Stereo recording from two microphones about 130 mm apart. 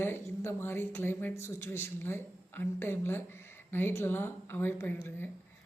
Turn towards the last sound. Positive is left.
turn(degrees=15)  # may be behind; listen again after turning